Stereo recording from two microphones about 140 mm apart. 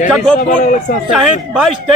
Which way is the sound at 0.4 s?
65° left (ahead or behind).